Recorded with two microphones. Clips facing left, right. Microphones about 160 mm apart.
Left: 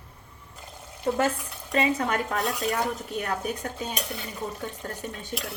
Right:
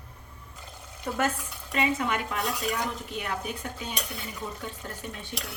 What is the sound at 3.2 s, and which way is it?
Dishes, 45° left (ahead or behind).